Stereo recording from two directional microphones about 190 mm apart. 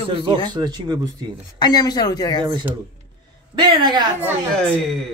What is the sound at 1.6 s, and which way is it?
Speech, 20° left (ahead or behind).